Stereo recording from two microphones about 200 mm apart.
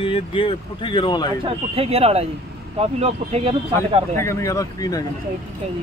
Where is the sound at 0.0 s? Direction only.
25° left (ahead or behind).